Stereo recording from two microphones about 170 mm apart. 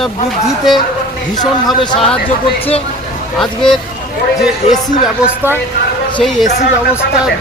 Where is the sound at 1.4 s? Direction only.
25° left (ahead or behind).